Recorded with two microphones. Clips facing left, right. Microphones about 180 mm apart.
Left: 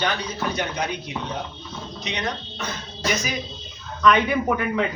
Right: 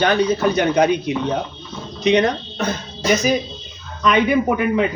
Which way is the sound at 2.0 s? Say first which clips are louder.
Right 14 dB; 55° right (ahead or behind).